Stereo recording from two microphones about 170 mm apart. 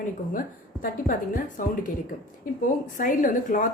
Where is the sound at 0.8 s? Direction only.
50° left (ahead or behind).